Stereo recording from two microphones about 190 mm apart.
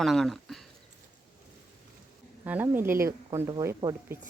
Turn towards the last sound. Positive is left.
turn(degrees=-15)  # may be behind; listen again after turning